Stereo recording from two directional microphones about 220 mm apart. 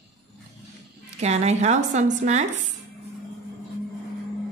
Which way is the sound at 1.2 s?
30° right (ahead or behind).